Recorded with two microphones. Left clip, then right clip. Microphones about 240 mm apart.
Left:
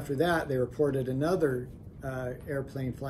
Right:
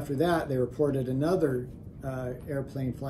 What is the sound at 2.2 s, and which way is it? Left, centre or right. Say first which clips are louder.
Speech: even; centre.